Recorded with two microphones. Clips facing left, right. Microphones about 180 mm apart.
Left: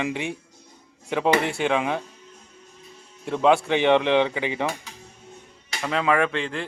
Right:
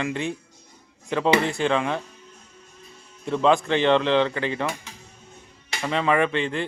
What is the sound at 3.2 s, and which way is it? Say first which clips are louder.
A man's voice: left 1 dB; 10° left (ahead or behind).